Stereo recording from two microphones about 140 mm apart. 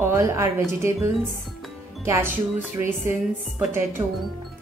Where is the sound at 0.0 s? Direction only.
20° right (ahead or behind).